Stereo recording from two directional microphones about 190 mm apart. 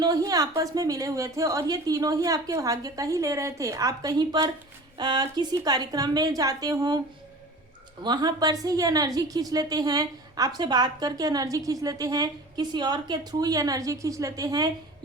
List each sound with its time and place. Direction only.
0.0 s a woman's voice: 20° right (ahead or behind)
8.0 s a woman's voice: 20° right (ahead or behind)